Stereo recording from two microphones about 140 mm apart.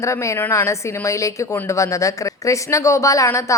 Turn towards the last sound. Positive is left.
turn(degrees=20)  # may be behind; listen again after turning